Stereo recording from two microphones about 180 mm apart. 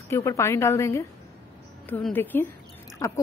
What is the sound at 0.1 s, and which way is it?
A woman's voice, 15° left (ahead or behind).